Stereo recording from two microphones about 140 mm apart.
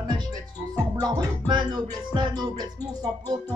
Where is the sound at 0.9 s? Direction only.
30° right (ahead or behind).